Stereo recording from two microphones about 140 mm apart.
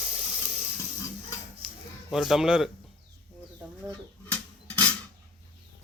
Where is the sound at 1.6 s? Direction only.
5° right (ahead or behind).